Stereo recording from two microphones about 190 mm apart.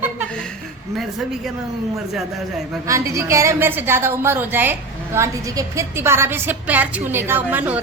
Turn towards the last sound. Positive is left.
turn(degrees=-10)  # may be behind; listen again after turning